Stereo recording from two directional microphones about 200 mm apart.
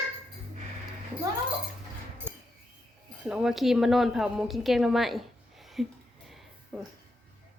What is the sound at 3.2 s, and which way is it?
A woman's voice, 5° right (ahead or behind).